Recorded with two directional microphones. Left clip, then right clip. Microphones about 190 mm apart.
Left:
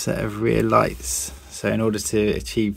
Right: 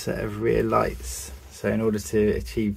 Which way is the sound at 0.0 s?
35° left (ahead or behind).